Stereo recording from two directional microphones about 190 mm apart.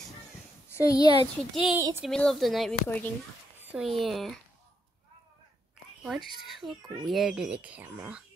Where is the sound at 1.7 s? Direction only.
10° right (ahead or behind).